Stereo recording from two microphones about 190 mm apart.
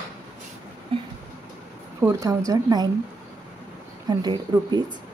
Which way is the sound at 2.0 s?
15° right (ahead or behind).